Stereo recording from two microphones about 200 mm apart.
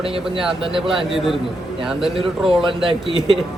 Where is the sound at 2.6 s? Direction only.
25° right (ahead or behind).